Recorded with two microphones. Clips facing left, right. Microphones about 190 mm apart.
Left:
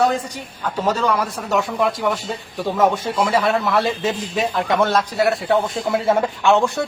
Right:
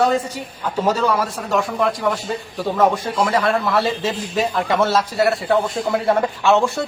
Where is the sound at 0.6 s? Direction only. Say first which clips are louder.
Right 1 dB; 10° right (ahead or behind).